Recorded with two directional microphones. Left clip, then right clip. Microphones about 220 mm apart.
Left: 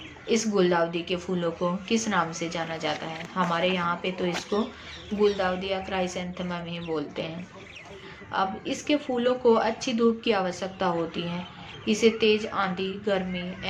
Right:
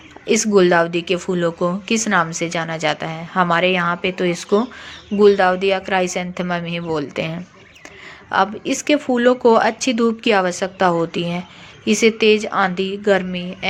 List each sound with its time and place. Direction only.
0.3 s speech: 35° right (ahead or behind)